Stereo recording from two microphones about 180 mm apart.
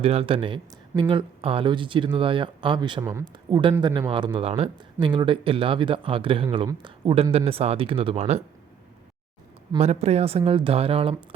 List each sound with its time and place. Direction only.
0.0 s speech: 35° right (ahead or behind)
3.0 s speech: 15° right (ahead or behind)
3.6 s speech: 25° right (ahead or behind)
9.7 s speech: 35° right (ahead or behind)